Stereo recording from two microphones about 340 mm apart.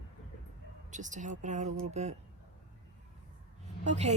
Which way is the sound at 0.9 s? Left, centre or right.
Right.